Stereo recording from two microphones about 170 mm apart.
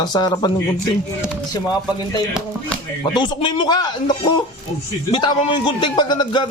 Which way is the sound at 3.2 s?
30° left (ahead or behind).